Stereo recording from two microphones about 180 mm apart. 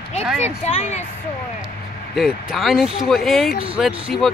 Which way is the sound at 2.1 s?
Centre (ahead or behind).